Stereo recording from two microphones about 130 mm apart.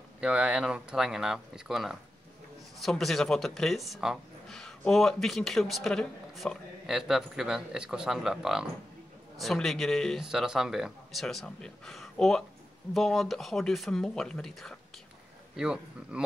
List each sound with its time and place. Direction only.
0.2 s speech: 10° right (ahead or behind)